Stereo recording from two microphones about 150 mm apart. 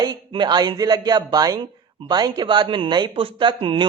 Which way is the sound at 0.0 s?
30° right (ahead or behind).